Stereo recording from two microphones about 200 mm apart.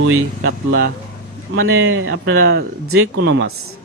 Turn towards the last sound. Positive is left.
turn(degrees=-65)  # may be behind; listen again after turning